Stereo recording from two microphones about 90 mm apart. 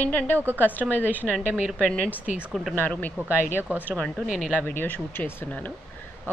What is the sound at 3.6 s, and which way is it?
Speech, 20° right (ahead or behind).